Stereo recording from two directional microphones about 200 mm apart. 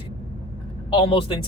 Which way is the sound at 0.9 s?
30° left (ahead or behind).